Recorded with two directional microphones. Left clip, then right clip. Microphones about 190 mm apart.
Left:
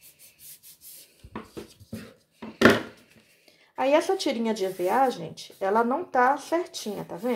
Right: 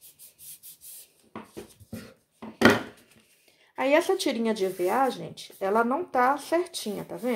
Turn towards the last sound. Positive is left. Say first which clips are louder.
# left 1 dB
turn(degrees=-10)  # may be behind; listen again after turning